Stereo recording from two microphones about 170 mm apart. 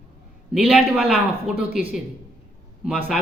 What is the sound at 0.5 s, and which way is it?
A man's voice, 5° right (ahead or behind).